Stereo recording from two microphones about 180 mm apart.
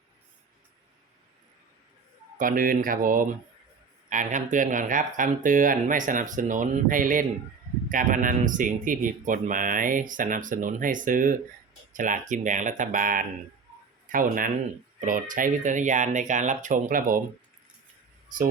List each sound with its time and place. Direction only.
2.4 s speech: 50° right (ahead or behind)
18.3 s speech: 50° right (ahead or behind)